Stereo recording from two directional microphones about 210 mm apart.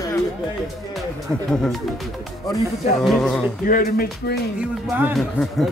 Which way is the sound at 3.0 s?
Centre (ahead or behind).